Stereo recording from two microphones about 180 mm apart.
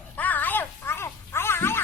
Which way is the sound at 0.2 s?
10° left (ahead or behind).